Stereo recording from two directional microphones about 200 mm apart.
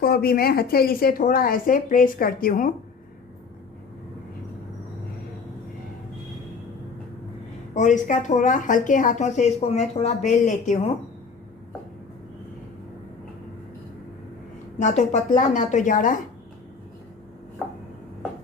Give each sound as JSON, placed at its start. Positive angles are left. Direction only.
{"t": 0.0, "sound": "a woman's voice", "side_deg": 50}
{"t": 7.7, "sound": "speech", "side_deg": 40}
{"t": 14.8, "sound": "speech", "side_deg": 35}